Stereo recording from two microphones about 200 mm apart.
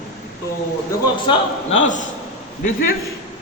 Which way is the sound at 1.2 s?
35° left (ahead or behind).